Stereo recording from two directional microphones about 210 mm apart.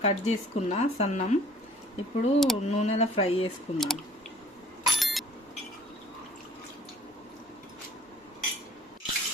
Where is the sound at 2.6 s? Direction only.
30° left (ahead or behind).